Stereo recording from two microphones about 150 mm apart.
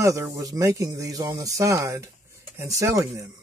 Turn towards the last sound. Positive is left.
turn(degrees=-20)  # may be behind; listen again after turning